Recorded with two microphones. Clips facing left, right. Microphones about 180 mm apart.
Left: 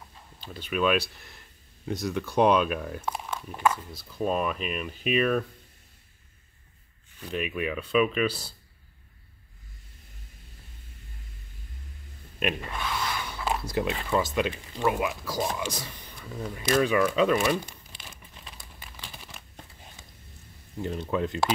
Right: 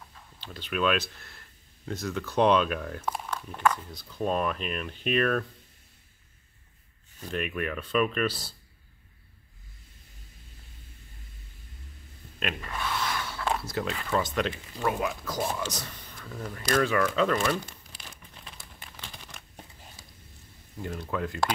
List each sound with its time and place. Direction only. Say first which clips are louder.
0.4 s speech: left 2 dB; 10° left (ahead or behind)
7.2 s speech: left 1 dB; 5° left (ahead or behind)
12.4 s speech: left 3 dB; 15° left (ahead or behind)
17.9 s crumpling: left 1 dB; centre (ahead or behind)
20.8 s speech: left 4 dB; 20° left (ahead or behind)